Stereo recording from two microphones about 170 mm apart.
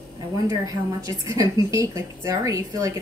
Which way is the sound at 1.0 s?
20° right (ahead or behind).